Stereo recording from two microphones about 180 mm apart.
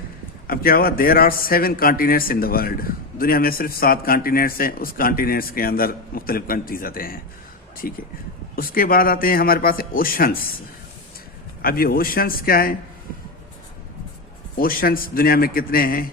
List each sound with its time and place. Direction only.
0.4 s a man's voice: 55° left (ahead or behind)
8.5 s a man's voice: 55° left (ahead or behind)
11.6 s a man's voice: 55° left (ahead or behind)
14.6 s a man's voice: 55° left (ahead or behind)